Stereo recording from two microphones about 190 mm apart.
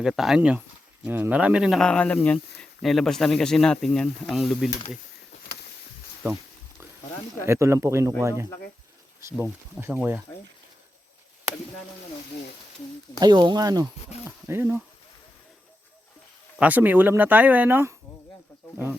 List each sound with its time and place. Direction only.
0.0 s speech: centre (ahead or behind)
6.2 s a sound: 15° right (ahead or behind)
7.4 s speech: 15° right (ahead or behind)
13.1 s speech: 20° right (ahead or behind)
16.6 s speech: 10° right (ahead or behind)